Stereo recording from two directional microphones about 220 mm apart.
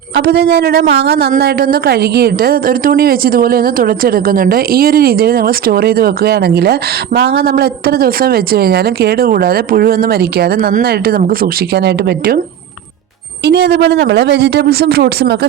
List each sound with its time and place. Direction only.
0.2 s a woman's voice: 45° right (ahead or behind)
13.4 s a woman's voice: 50° right (ahead or behind)